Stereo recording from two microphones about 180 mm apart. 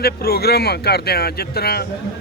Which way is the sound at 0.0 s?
60° left (ahead or behind).